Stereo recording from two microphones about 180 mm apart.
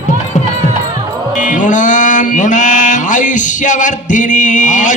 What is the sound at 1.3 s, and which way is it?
Mantra, 45° left (ahead or behind).